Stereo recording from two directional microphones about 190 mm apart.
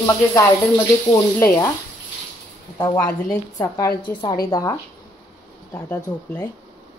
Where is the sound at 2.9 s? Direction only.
10° left (ahead or behind).